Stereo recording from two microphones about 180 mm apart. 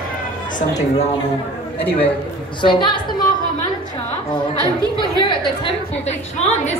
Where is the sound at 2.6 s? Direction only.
25° left (ahead or behind).